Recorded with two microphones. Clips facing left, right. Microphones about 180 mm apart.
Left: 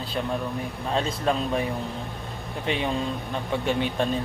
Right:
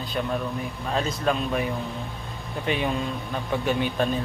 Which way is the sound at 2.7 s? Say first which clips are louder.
Even; 25° left (ahead or behind).